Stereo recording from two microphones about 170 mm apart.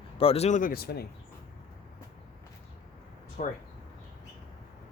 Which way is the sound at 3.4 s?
50° left (ahead or behind).